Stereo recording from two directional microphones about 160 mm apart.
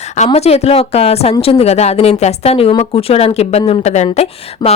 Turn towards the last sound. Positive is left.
turn(degrees=45)  # may be behind; listen again after turning